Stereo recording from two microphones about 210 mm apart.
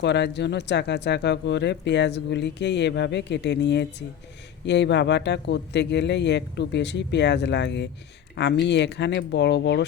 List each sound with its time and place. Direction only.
0.0 s speech: 55° left (ahead or behind)